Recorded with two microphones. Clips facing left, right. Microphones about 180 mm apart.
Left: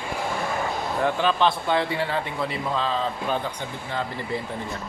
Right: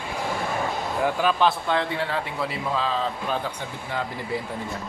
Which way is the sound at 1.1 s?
5° right (ahead or behind).